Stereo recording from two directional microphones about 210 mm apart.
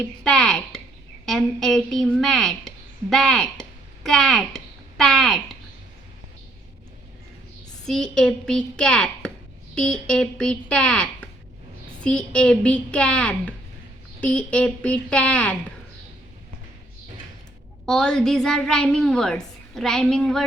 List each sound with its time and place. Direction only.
0.3 s a woman's voice: centre (ahead or behind)
7.9 s a woman's voice: 5° left (ahead or behind)
17.8 s a woman's voice: 5° left (ahead or behind)